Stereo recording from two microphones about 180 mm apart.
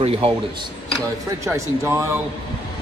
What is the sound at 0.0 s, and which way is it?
Speech, 35° right (ahead or behind).